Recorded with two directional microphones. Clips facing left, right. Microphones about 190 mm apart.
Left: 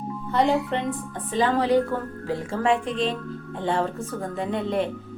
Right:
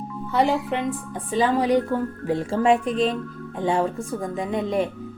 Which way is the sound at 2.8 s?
25° left (ahead or behind).